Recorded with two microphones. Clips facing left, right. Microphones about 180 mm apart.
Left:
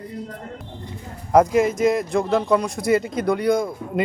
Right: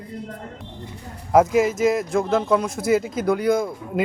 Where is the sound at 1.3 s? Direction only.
5° right (ahead or behind).